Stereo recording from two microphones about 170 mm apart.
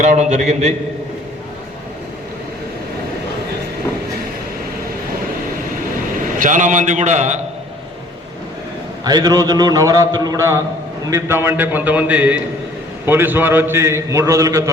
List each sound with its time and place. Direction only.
0.0 s a man's voice: 45° right (ahead or behind)
6.4 s a man's voice: 50° right (ahead or behind)
9.0 s a man's voice: 25° right (ahead or behind)